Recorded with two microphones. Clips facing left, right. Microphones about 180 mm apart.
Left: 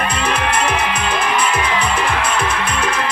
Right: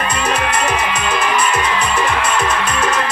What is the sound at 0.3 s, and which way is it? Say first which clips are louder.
Music: right 1 dB; 55° left (ahead or behind).